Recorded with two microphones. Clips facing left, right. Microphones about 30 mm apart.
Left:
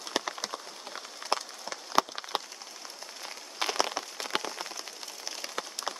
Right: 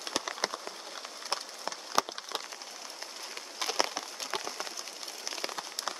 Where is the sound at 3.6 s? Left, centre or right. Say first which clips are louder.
Left 2 dB; left.